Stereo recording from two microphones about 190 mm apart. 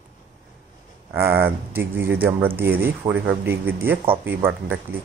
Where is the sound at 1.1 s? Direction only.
10° right (ahead or behind).